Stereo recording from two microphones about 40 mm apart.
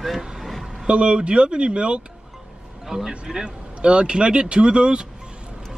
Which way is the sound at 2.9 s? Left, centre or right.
Centre.